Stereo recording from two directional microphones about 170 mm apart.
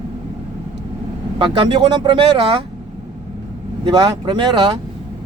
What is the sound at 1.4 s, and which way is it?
Speech, 30° right (ahead or behind).